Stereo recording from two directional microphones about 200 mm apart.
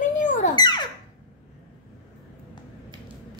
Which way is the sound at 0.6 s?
20° left (ahead or behind).